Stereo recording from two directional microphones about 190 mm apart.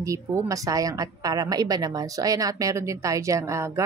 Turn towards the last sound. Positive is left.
turn(degrees=-15)  # may be behind; listen again after turning